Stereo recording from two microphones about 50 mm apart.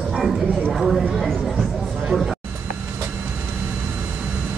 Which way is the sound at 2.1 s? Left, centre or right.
Centre.